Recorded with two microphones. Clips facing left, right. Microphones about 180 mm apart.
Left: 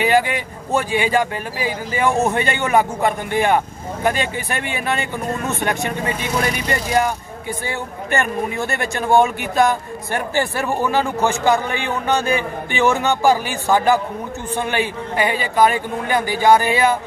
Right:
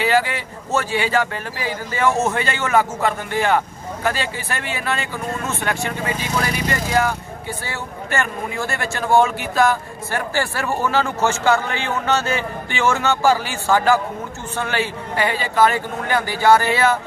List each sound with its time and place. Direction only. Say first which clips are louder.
0.0 s speech: left 2 dB; 15° left (ahead or behind)